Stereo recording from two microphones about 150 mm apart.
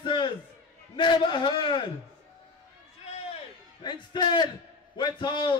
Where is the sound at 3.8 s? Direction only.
30° left (ahead or behind).